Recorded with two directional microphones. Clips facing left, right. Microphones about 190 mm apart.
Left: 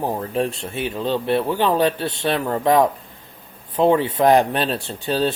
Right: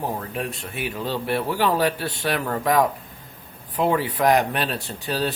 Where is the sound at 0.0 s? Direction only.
30° left (ahead or behind).